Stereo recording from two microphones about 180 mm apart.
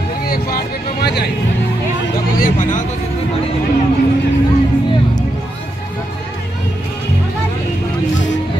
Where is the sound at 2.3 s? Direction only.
50° left (ahead or behind).